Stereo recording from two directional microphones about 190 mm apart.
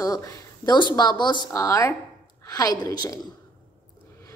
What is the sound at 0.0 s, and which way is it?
A woman's voice, 20° left (ahead or behind).